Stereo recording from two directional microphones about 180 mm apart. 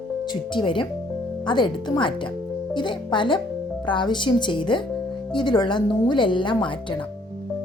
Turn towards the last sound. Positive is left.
turn(degrees=25)  # may be behind; listen again after turning